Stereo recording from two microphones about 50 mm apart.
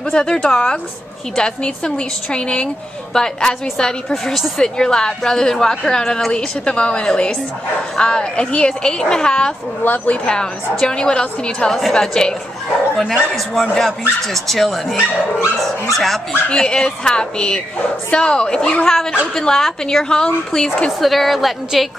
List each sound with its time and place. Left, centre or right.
0.1 s a woman's voice: centre
9.8 s a woman's voice: left
10.2 s a woman's voice: centre
12.9 s speech: centre
16.5 s a woman's voice: centre
21.0 s speech: centre